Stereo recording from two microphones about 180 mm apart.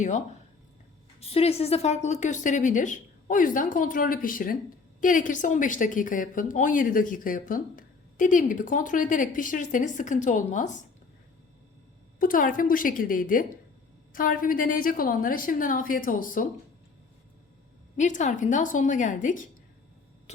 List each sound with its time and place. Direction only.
1.2 s a woman's voice: 35° left (ahead or behind)
12.2 s a woman's voice: 50° left (ahead or behind)
17.9 s a woman's voice: 45° left (ahead or behind)